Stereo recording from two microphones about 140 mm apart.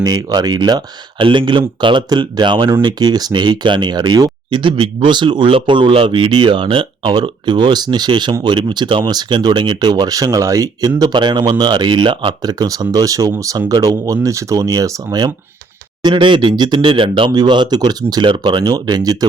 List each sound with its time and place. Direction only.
0.0 s speech: 25° right (ahead or behind)